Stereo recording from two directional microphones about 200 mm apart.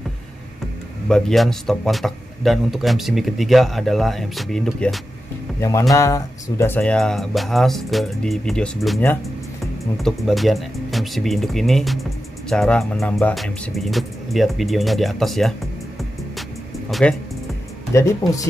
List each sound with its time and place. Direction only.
1.0 s speech: centre (ahead or behind)
5.6 s speech: 15° left (ahead or behind)
17.0 s speech: 5° left (ahead or behind)
17.9 s speech: 15° left (ahead or behind)